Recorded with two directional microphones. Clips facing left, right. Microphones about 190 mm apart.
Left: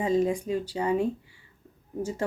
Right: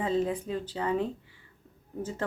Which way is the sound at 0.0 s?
15° left (ahead or behind).